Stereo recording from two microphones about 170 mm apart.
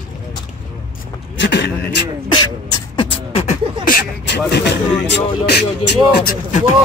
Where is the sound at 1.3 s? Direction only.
85° left.